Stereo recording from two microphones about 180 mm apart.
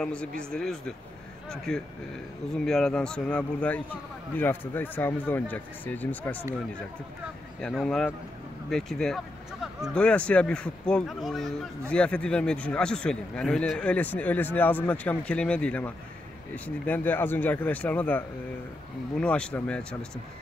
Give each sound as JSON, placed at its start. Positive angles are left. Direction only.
{"t": 0.0, "sound": "a man's voice", "side_deg": 5}
{"t": 7.6, "sound": "a man's voice", "side_deg": 5}